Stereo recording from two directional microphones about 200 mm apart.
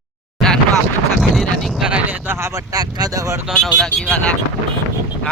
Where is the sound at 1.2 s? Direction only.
Centre (ahead or behind).